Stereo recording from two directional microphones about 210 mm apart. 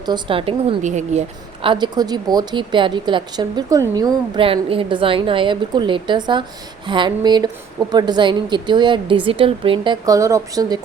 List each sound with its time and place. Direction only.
0.0 s speech: 20° right (ahead or behind)
1.6 s speech: 20° right (ahead or behind)